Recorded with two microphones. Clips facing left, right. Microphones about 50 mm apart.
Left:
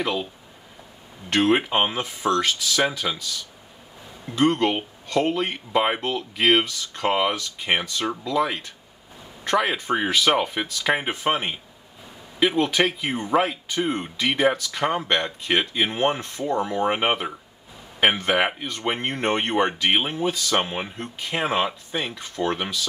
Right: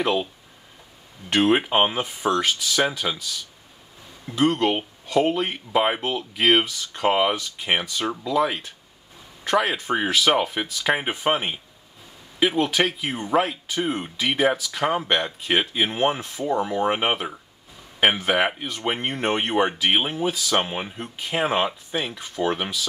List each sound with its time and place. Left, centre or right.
0.0 s speech: centre
1.3 s speech: centre